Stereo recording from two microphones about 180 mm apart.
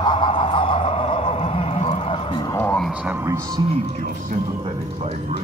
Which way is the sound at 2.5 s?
10° left (ahead or behind).